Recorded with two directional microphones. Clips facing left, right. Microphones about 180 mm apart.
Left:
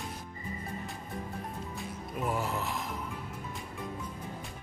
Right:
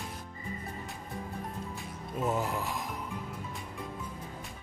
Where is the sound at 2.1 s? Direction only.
25° right (ahead or behind).